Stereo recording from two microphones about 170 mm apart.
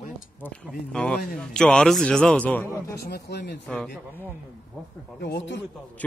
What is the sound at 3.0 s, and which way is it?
Speech, 70° left (ahead or behind).